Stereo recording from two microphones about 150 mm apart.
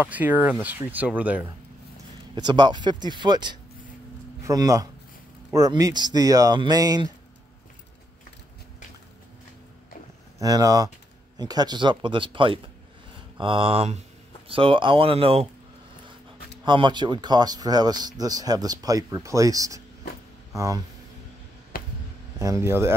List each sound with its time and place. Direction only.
0.0 s speech: 10° right (ahead or behind)
2.3 s speech: 30° right (ahead or behind)
10.4 s speech: 25° right (ahead or behind); by 15.4 s 40° right (ahead or behind)
16.6 s speech: 30° right (ahead or behind)
21.7 s a sound: 75° left (ahead or behind)
22.4 s speech: 20° right (ahead or behind)